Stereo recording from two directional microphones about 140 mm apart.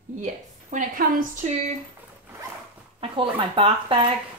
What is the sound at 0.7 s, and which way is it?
Speech, 70° right (ahead or behind).